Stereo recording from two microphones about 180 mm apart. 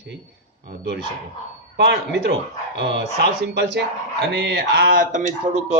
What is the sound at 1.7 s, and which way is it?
Speech, 75° right (ahead or behind).